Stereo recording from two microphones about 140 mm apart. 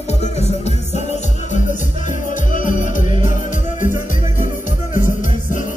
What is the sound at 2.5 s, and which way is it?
Music, 70° left (ahead or behind).